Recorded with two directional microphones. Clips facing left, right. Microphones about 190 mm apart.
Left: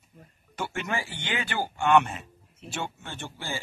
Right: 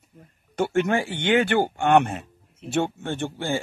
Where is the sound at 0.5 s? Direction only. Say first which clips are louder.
Right 10 dB; 55° right (ahead or behind).